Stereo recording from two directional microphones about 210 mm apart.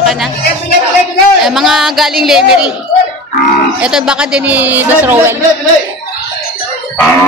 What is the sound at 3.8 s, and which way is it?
Speech, 5° right (ahead or behind).